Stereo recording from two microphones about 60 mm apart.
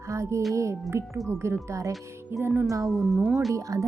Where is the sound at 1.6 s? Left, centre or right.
Right.